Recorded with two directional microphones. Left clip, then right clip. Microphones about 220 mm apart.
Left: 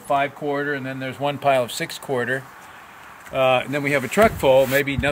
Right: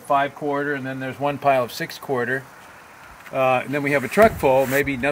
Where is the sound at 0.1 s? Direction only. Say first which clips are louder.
Right 1 dB; 20° left (ahead or behind).